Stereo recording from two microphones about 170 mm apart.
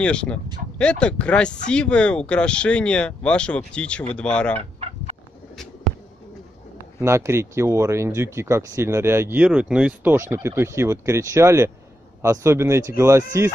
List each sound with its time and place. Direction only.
0.0 s speech: 5° left (ahead or behind)
4.6 s fowl: 35° right (ahead or behind)
7.0 s speech: 15° right (ahead or behind)